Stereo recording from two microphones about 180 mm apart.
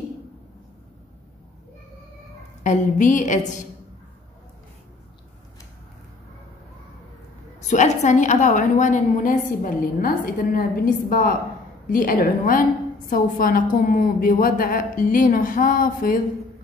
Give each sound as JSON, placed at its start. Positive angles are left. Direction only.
{"t": 2.6, "sound": "a woman's voice", "side_deg": 45}
{"t": 7.6, "sound": "a woman's voice", "side_deg": 40}